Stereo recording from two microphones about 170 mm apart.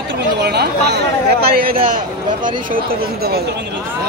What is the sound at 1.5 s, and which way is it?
Speech, 60° right (ahead or behind).